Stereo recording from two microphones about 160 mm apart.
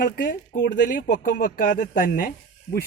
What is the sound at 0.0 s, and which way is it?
Speech, 60° left (ahead or behind).